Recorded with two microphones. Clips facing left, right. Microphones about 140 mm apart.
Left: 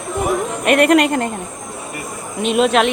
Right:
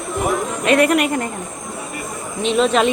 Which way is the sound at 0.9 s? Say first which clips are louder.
Left 4 dB; 90° left.